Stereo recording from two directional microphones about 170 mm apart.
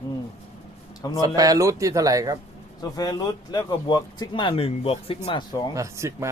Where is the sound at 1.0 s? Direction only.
20° left (ahead or behind).